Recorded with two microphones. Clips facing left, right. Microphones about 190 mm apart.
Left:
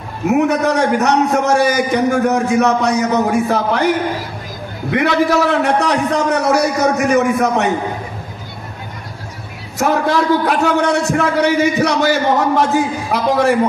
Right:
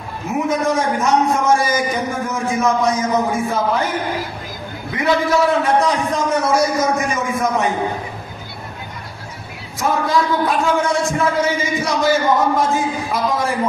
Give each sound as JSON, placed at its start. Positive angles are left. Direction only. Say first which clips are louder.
{"t": 0.3, "sound": "a man's voice", "louder": "left 4 dB", "side_deg": 70}
{"t": 4.9, "sound": "a man's voice", "louder": "left 3 dB", "side_deg": 75}
{"t": 9.8, "sound": "a man's voice", "louder": "left 3 dB", "side_deg": 70}